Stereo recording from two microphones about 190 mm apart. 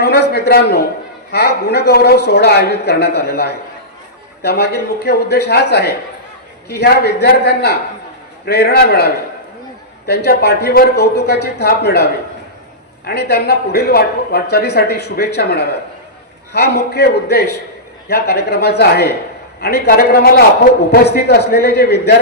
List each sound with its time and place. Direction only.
0.0 s a sound: 60° left (ahead or behind)
1.3 s speech: 60° left (ahead or behind)
13.1 s speech: 55° left (ahead or behind)